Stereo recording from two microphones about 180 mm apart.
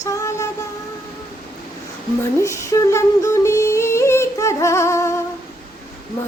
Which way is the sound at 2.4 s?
15° left (ahead or behind).